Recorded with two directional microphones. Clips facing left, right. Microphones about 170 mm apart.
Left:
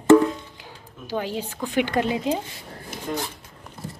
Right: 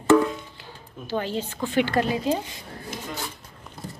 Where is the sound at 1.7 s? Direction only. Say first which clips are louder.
Even; 15° left (ahead or behind).